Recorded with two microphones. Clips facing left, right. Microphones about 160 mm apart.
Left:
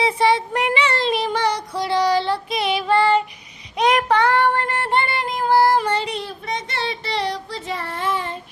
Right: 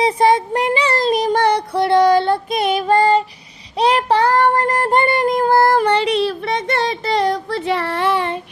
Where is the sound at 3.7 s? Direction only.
30° right (ahead or behind).